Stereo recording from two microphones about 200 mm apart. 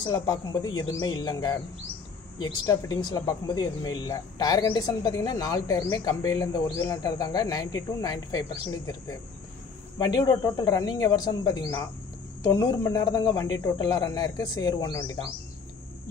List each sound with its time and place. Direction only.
0.0 s speech: 20° left (ahead or behind)